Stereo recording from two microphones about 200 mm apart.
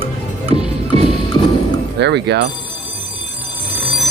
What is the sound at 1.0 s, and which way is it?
Music, 20° left (ahead or behind).